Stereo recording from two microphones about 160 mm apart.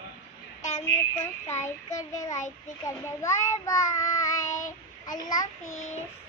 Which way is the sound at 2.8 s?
20° left (ahead or behind).